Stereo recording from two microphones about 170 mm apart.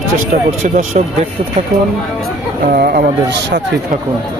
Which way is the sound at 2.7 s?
60° right (ahead or behind).